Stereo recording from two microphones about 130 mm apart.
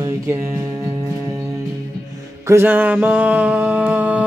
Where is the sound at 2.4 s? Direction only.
15° right (ahead or behind).